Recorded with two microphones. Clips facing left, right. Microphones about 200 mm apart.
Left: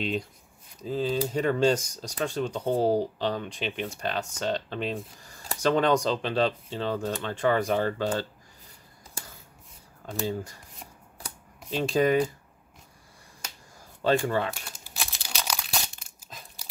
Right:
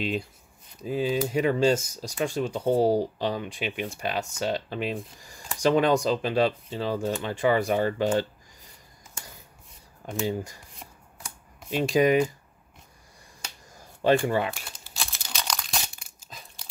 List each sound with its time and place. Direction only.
0.0 s speech: 5° right (ahead or behind)
9.2 s a sound: 35° left (ahead or behind)
10.2 s speech: 15° right (ahead or behind)
11.7 s speech: 15° right (ahead or behind)
14.0 s speech: 15° right (ahead or behind)
15.0 s crumpling: 10° left (ahead or behind)